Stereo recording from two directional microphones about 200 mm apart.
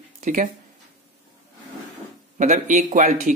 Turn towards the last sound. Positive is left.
turn(degrees=-40)  # may be behind; listen again after turning